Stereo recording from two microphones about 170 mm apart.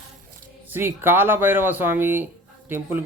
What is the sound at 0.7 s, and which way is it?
A man's voice, 15° right (ahead or behind).